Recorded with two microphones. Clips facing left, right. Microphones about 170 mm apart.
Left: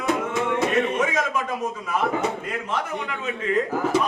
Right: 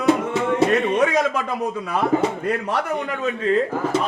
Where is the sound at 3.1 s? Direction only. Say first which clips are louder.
Right 6 dB; 40° right (ahead or behind).